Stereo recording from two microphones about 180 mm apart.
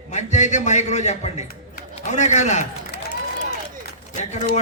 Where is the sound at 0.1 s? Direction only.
40° left (ahead or behind).